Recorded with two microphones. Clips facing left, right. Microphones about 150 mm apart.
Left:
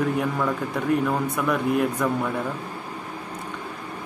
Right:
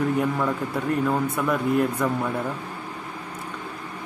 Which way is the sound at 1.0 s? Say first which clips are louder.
Even; centre (ahead or behind).